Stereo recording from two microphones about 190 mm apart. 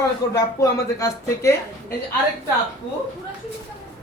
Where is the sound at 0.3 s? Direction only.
15° left (ahead or behind).